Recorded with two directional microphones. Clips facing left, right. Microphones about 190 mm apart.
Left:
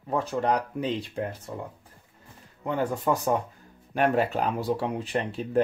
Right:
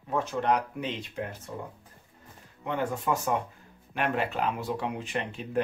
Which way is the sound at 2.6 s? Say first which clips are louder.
Left 3 dB; 35° left (ahead or behind).